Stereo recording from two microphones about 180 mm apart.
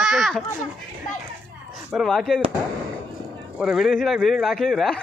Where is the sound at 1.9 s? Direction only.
Centre (ahead or behind).